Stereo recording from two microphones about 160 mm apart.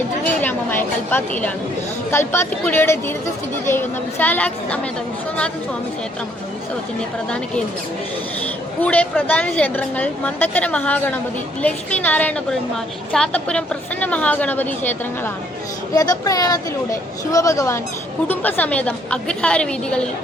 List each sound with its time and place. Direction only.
0.4 s a sound: 15° left (ahead or behind)
2.0 s a woman's voice: 15° left (ahead or behind)
8.8 s a woman's voice: 10° left (ahead or behind)